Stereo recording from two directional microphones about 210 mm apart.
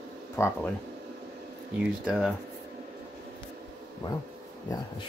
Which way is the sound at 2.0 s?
Centre (ahead or behind).